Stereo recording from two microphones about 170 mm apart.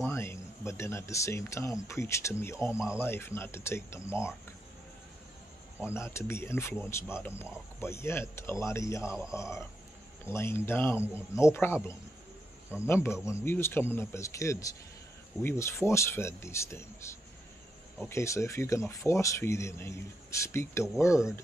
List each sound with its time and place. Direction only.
0.0 s a man's voice: 15° left (ahead or behind)
5.9 s a man's voice: 15° left (ahead or behind)